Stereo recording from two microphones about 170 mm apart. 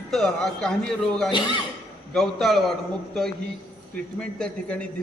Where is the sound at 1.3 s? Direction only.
25° left (ahead or behind).